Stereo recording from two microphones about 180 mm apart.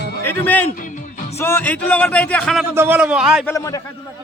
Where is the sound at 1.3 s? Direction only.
10° left (ahead or behind).